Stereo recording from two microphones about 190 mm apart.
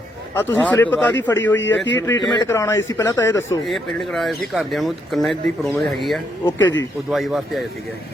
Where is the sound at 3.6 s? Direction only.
Centre (ahead or behind).